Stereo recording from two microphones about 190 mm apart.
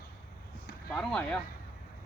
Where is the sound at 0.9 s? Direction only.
5° left (ahead or behind).